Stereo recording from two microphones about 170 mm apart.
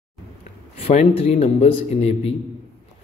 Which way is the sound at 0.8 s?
35° left (ahead or behind).